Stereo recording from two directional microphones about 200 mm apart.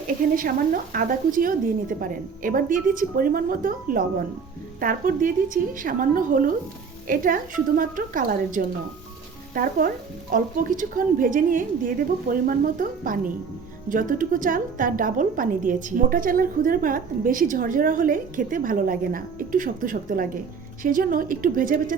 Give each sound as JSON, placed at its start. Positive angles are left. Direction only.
{"t": 0.3, "sound": "a woman's voice", "side_deg": -45}